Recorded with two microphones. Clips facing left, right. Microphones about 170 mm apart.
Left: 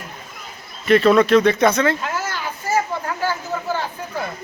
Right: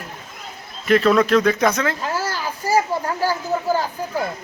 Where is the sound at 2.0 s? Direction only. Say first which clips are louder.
Right 1 dB; 35° right (ahead or behind).